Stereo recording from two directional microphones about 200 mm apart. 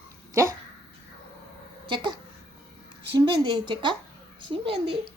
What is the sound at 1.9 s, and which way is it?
Speech, 25° right (ahead or behind).